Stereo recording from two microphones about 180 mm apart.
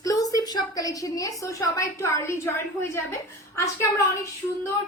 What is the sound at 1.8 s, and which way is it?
Speech, 15° left (ahead or behind).